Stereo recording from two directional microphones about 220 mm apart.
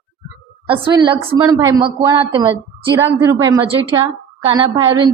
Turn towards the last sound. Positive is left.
turn(degrees=-20)  # may be behind; listen again after turning